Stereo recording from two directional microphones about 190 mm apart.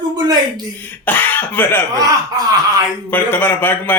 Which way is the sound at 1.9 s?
20° right (ahead or behind).